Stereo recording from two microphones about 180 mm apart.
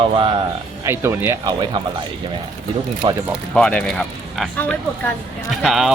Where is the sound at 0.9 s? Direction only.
15° right (ahead or behind).